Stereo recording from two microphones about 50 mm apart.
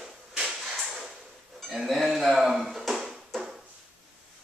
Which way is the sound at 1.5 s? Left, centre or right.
Centre.